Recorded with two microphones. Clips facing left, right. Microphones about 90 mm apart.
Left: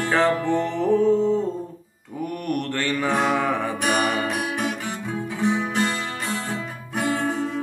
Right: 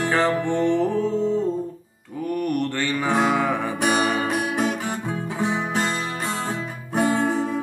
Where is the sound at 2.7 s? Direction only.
5° right (ahead or behind).